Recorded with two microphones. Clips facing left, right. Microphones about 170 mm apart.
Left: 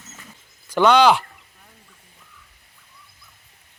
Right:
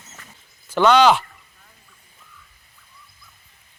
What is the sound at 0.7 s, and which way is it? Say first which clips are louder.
Speech: even; 10° left (ahead or behind).